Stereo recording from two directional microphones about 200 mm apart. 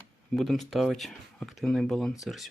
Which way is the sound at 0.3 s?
Centre (ahead or behind).